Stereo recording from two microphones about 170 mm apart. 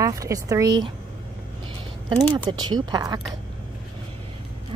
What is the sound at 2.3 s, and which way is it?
Speech, 25° right (ahead or behind).